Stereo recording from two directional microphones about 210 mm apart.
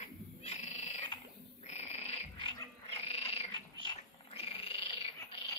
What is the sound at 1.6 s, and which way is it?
Frog, 30° left (ahead or behind).